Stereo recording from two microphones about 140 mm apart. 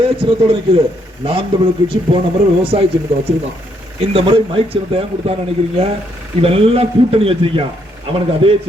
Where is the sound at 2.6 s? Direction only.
40° right (ahead or behind).